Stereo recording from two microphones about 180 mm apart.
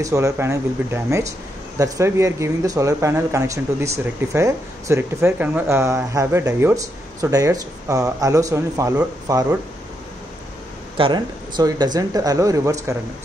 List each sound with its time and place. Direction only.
0.0 s speech: 15° right (ahead or behind)
11.0 s speech: 25° right (ahead or behind)